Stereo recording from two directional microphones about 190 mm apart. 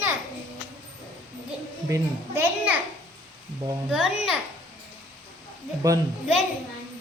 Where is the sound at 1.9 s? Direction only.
10° right (ahead or behind).